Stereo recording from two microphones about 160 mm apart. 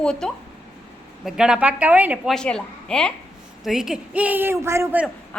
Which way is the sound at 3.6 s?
5° right (ahead or behind).